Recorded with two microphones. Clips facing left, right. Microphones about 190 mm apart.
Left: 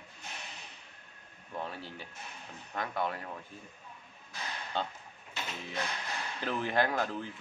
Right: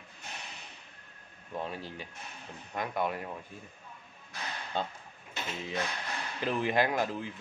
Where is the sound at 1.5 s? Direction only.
15° right (ahead or behind).